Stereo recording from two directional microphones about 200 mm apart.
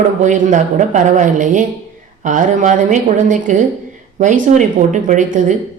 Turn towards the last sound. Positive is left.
turn(degrees=-40)  # may be behind; listen again after turning